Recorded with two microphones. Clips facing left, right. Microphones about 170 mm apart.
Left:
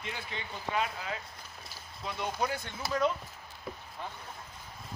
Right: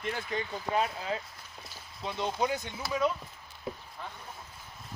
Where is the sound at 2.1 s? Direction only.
20° right (ahead or behind).